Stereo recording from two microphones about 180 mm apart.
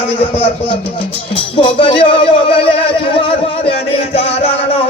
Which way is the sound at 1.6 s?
30° left (ahead or behind).